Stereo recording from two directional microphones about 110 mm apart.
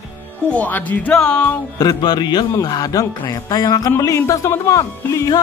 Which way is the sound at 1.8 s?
35° left (ahead or behind).